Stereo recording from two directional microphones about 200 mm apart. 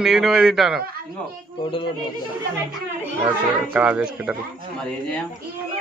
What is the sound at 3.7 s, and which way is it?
Speech, 10° right (ahead or behind).